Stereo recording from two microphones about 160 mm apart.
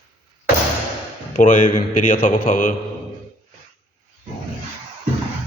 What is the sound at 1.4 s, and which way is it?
A man's voice, 55° left (ahead or behind).